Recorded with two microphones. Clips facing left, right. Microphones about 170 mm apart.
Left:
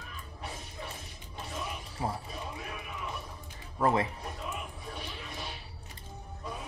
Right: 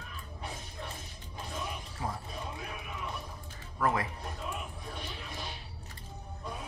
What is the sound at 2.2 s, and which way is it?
Basketball bounce, centre (ahead or behind).